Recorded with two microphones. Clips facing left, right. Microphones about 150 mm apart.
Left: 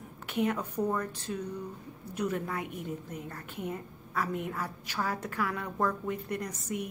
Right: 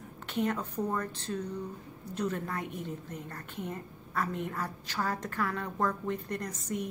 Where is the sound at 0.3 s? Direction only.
10° left (ahead or behind).